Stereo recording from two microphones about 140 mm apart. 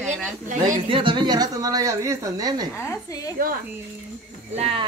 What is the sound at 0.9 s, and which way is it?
A woman's voice, 35° right (ahead or behind).